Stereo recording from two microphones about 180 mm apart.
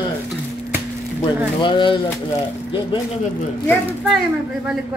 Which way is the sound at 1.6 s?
25° left (ahead or behind).